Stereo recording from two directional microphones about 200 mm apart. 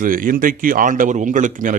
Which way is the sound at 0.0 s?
45° right (ahead or behind).